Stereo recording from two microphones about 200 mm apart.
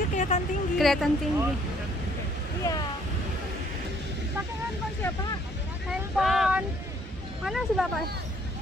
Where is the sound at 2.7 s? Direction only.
15° left (ahead or behind).